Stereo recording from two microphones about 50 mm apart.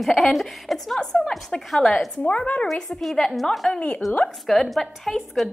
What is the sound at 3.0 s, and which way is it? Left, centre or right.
A woman's voice, centre.